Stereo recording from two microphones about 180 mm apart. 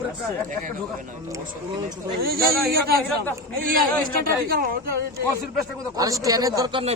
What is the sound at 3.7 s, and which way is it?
A man's voice, 55° right (ahead or behind).